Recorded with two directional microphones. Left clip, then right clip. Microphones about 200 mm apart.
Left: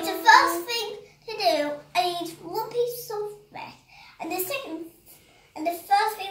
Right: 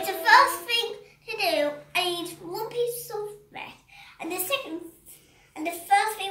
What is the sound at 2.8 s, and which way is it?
Speech, 15° right (ahead or behind).